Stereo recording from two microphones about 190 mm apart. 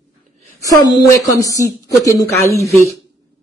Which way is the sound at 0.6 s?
15° left (ahead or behind).